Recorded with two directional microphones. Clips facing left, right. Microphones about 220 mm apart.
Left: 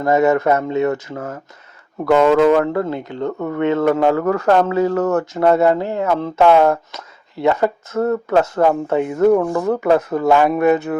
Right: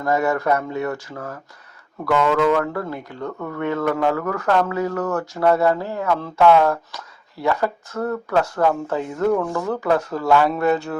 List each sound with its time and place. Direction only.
0.0 s speech: 20° left (ahead or behind)